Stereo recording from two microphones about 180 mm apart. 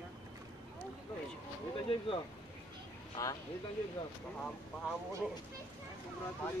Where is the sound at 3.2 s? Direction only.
20° left (ahead or behind).